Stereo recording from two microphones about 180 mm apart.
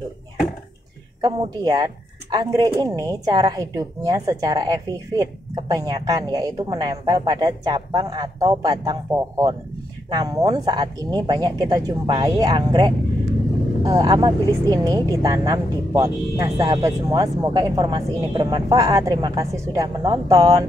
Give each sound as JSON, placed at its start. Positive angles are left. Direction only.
{"t": 1.2, "sound": "speech", "side_deg": -20}